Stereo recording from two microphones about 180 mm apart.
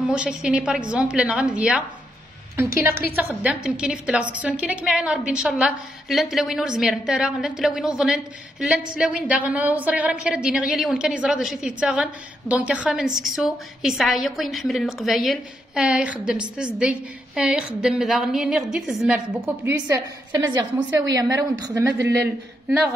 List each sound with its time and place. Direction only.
0.1 s a woman's voice: 5° right (ahead or behind)